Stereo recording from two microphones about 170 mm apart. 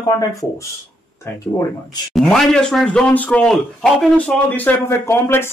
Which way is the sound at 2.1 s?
Centre (ahead or behind).